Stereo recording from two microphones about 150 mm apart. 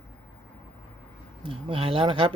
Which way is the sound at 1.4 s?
35° right (ahead or behind).